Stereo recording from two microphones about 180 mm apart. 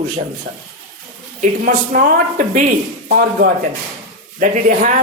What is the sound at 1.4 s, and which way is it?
Speech, 50° right (ahead or behind).